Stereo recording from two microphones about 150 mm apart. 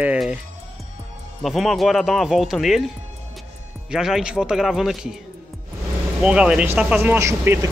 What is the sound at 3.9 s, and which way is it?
Speech, 5° right (ahead or behind).